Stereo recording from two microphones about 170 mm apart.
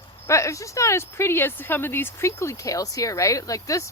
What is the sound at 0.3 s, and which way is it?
Speech, 15° left (ahead or behind).